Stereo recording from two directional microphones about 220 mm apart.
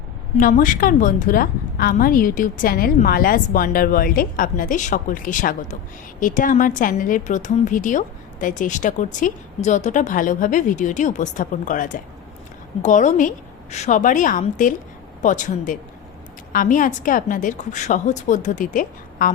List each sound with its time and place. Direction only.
0.3 s a woman's voice: 35° left (ahead or behind)